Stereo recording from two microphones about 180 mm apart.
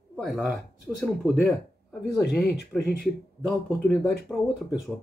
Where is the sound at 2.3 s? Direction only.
65° left (ahead or behind).